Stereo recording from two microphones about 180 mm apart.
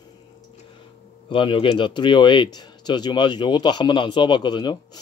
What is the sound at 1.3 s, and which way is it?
Speech, 30° left (ahead or behind).